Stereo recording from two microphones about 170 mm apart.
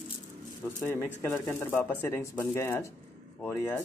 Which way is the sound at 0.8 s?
15° left (ahead or behind).